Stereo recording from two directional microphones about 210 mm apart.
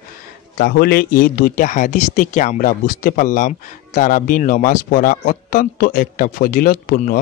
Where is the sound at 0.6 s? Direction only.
45° left (ahead or behind).